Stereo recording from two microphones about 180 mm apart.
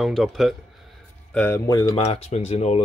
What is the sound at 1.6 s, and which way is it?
Speech, 20° left (ahead or behind).